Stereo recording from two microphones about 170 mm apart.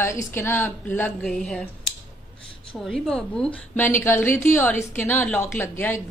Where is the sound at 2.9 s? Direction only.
5° left (ahead or behind).